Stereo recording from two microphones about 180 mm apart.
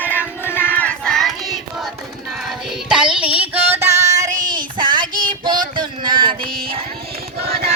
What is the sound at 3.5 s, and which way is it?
Female singing, 10° right (ahead or behind).